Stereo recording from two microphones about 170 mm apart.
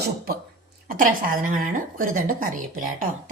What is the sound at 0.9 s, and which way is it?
A woman's voice, 55° right (ahead or behind).